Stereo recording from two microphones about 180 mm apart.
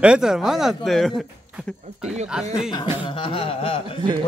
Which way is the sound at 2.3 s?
5° right (ahead or behind).